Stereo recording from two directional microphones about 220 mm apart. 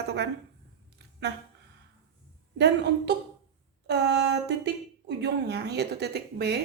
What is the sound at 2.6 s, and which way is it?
A woman's voice, 50° right (ahead or behind).